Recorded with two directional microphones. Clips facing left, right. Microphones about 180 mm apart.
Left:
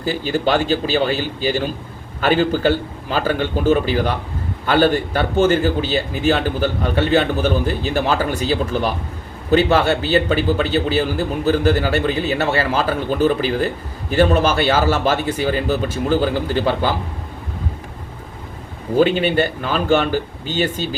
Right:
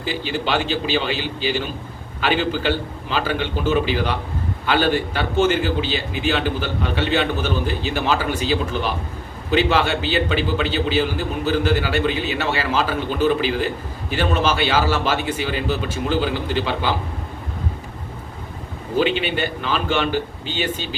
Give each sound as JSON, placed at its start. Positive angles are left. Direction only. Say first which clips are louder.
{"t": 0.0, "sound": "a man's voice", "louder": "left 5 dB", "side_deg": 45}
{"t": 18.9, "sound": "a man's voice", "louder": "left 5 dB", "side_deg": 45}